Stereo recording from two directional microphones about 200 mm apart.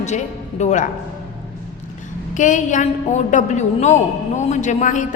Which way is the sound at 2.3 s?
40° left (ahead or behind).